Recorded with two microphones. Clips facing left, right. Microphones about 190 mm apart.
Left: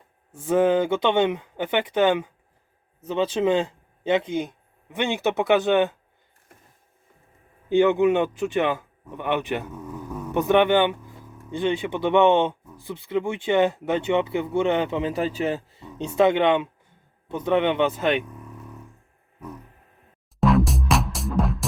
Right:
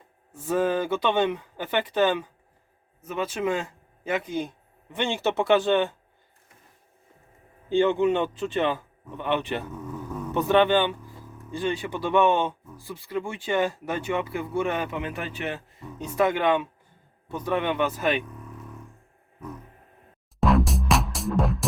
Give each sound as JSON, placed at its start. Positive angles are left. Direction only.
{"t": 0.3, "sound": "speech", "side_deg": 20}
{"t": 3.0, "sound": "speech", "side_deg": 30}
{"t": 7.7, "sound": "speech", "side_deg": 10}
{"t": 18.1, "sound": "speech", "side_deg": 0}
{"t": 20.4, "sound": "music", "side_deg": 0}